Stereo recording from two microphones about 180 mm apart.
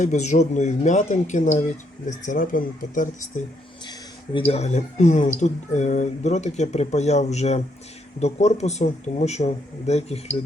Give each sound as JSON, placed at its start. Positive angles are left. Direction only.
{"t": 0.0, "sound": "speech", "side_deg": 40}
{"t": 4.4, "sound": "speech", "side_deg": 35}